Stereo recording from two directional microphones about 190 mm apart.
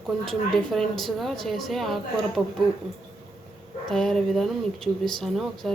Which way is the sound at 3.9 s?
Centre (ahead or behind).